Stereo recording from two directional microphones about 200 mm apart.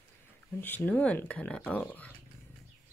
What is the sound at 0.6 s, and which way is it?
Speech, 10° left (ahead or behind).